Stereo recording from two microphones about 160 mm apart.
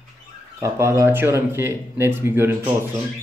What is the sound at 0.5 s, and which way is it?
Speech, 15° right (ahead or behind).